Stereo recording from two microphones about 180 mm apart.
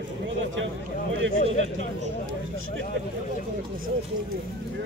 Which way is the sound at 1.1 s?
90° right.